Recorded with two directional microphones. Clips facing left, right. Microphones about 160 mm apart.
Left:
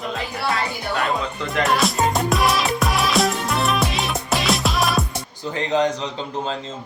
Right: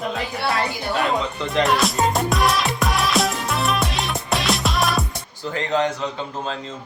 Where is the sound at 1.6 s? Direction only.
Centre (ahead or behind).